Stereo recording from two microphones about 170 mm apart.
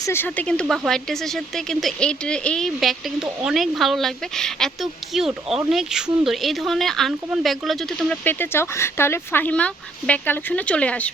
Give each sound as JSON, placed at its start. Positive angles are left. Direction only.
{"t": 0.0, "sound": "speech", "side_deg": 15}